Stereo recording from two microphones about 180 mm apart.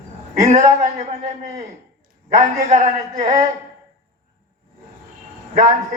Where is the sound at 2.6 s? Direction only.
40° right (ahead or behind).